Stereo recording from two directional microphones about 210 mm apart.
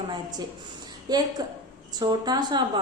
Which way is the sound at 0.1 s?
20° right (ahead or behind).